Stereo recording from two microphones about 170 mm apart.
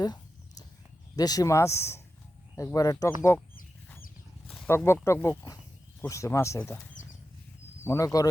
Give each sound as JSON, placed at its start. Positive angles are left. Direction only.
{"t": 0.0, "sound": "a sound", "side_deg": 25}
{"t": 1.1, "sound": "speech", "side_deg": 20}
{"t": 4.4, "sound": "speech", "side_deg": 10}